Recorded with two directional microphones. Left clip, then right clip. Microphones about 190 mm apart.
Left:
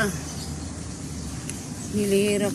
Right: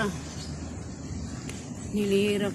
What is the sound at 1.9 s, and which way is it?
Speech, 20° right (ahead or behind).